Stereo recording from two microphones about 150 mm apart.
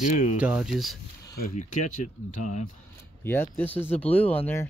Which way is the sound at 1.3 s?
60° left (ahead or behind).